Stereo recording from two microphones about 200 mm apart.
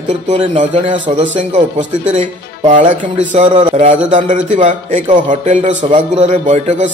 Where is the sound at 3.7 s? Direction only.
40° right (ahead or behind).